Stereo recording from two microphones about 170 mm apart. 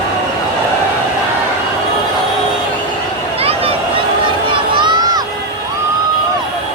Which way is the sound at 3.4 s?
35° right (ahead or behind).